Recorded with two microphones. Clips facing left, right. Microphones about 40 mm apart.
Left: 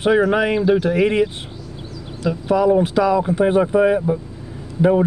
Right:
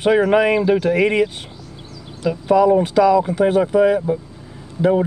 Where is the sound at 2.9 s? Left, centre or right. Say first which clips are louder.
Right 2 dB; centre.